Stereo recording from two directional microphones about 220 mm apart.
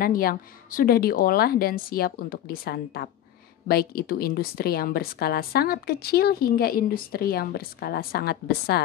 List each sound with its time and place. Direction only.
0.0 s a woman's voice: 40° left (ahead or behind)